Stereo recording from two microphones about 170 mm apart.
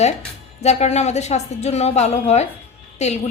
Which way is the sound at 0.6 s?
40° left (ahead or behind).